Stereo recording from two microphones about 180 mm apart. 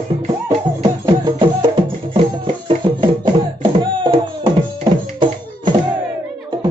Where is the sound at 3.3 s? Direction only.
25° right (ahead or behind).